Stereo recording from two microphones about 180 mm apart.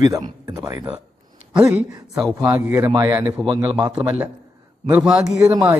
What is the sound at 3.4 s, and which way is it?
Speech, 25° right (ahead or behind).